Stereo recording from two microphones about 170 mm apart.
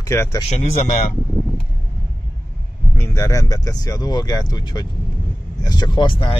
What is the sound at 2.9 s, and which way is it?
Speech, 15° left (ahead or behind).